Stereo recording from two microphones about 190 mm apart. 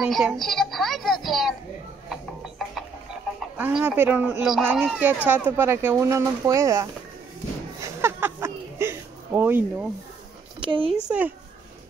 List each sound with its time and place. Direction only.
0.0 s a child's voice: centre (ahead or behind)
2.0 s music: centre (ahead or behind)
3.3 s speech: 5° right (ahead or behind)
7.8 s a sound: 15° right (ahead or behind)
10.6 s a sound: 25° right (ahead or behind)
11.1 s speech: 10° right (ahead or behind)